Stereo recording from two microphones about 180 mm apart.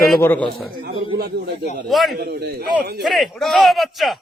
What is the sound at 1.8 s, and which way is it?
Speech, centre (ahead or behind).